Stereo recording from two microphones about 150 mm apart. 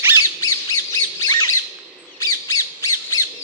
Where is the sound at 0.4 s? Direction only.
25° left (ahead or behind).